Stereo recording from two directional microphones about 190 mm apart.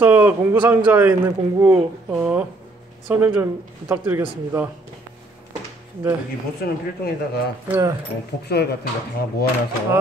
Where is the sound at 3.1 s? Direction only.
10° right (ahead or behind).